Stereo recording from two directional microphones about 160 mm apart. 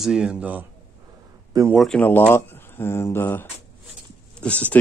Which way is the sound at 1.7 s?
Centre (ahead or behind).